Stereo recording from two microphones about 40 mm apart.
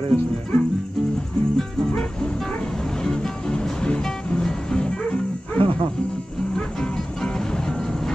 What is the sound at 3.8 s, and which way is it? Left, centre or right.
Music, left.